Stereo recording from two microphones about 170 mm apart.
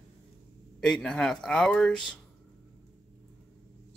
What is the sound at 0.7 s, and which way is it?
Speech, 5° left (ahead or behind).